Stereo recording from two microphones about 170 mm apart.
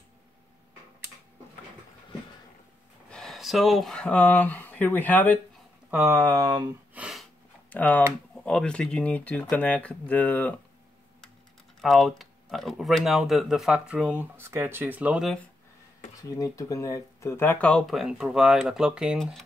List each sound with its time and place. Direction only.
3.1 s speech: centre (ahead or behind)
5.9 s speech: 15° right (ahead or behind)
6.9 s sniff: 5° right (ahead or behind)
7.7 s speech: 10° left (ahead or behind)
11.8 s speech: centre (ahead or behind)
16.2 s speech: 20° left (ahead or behind); by 19.4 s centre (ahead or behind)